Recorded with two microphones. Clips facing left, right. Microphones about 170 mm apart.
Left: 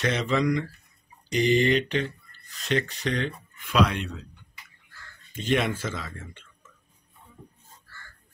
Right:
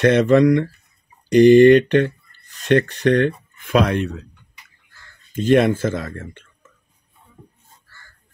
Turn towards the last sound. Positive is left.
turn(degrees=-55)  # may be behind; listen again after turning